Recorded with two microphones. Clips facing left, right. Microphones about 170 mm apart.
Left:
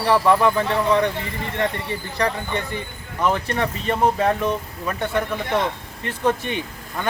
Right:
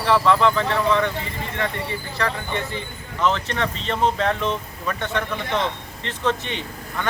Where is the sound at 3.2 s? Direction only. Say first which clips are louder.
Left 1 dB; 10° left (ahead or behind).